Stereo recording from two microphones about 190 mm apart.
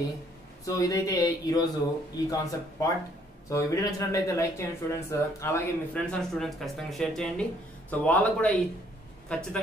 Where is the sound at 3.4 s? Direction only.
15° left (ahead or behind).